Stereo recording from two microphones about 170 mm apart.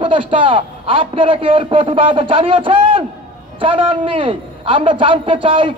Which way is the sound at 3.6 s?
30° right (ahead or behind).